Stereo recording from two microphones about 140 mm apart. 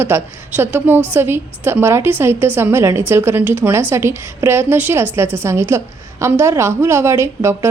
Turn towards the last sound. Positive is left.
turn(degrees=-20)  # may be behind; listen again after turning